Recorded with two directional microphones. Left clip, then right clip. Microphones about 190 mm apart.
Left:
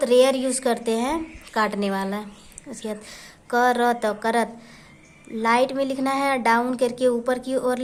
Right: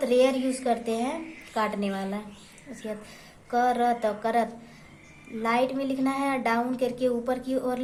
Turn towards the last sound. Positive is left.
turn(degrees=35)  # may be behind; listen again after turning